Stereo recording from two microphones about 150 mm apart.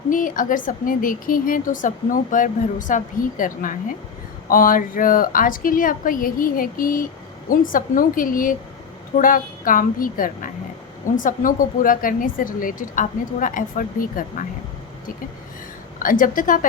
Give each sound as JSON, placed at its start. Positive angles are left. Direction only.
{"t": 0.1, "sound": "a woman's voice", "side_deg": 60}
{"t": 16.0, "sound": "a woman's voice", "side_deg": 65}